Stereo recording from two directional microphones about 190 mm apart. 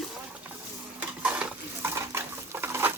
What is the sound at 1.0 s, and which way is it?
Stir, 5° right (ahead or behind).